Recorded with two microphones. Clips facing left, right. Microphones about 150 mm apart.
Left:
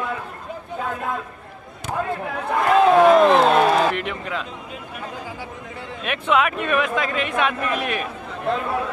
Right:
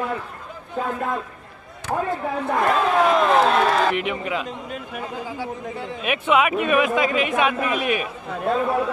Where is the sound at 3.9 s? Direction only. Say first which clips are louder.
Right 2 dB; 5° right (ahead or behind).